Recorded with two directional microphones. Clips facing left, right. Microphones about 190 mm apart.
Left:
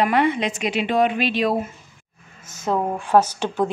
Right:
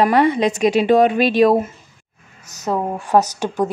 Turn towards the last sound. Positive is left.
turn(degrees=-10)  # may be behind; listen again after turning